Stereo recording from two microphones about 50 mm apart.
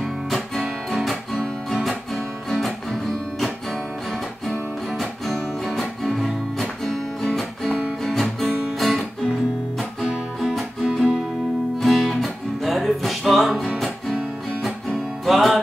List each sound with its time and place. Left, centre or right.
1.7 s guitar: centre
2.5 s music: centre
10.9 s music: centre
11.8 s music: centre
14.6 s music: centre